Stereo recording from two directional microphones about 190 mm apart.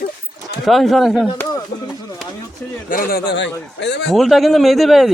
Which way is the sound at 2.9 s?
50° left (ahead or behind).